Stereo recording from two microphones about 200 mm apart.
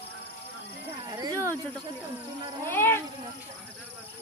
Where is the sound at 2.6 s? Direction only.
10° left (ahead or behind).